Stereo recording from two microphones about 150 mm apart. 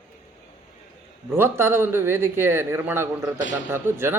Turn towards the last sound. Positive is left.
turn(degrees=-15)  # may be behind; listen again after turning